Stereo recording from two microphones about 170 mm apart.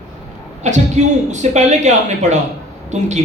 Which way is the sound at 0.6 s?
45° right (ahead or behind).